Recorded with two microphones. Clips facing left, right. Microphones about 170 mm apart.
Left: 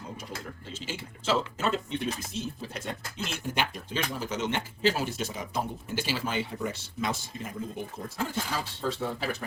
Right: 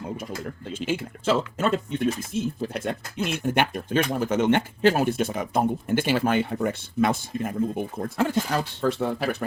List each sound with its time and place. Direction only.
0.7 s speech: 60° right (ahead or behind)